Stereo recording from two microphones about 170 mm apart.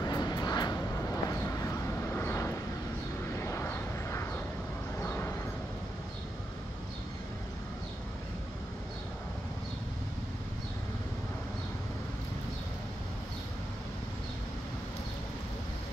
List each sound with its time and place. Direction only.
0.0 s vehicle: 25° left (ahead or behind)